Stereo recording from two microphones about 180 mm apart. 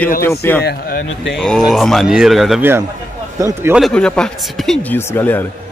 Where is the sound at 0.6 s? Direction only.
55° left (ahead or behind).